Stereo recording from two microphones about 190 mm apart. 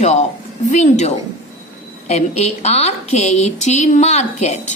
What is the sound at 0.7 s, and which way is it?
A woman's voice, 35° left (ahead or behind).